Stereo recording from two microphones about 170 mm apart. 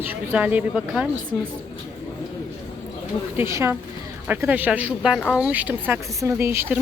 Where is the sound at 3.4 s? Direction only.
15° right (ahead or behind).